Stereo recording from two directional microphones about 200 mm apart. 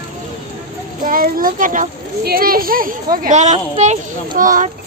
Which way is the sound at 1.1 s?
45° right (ahead or behind).